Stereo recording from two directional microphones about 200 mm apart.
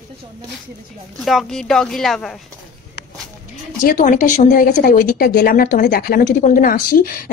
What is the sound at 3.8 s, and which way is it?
A woman's voice, 40° left (ahead or behind).